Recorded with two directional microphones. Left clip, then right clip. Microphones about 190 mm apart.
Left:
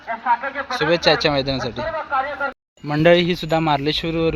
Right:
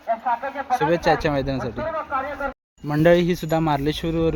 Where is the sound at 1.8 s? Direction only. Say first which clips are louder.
Left 3 dB; 65° right (ahead or behind).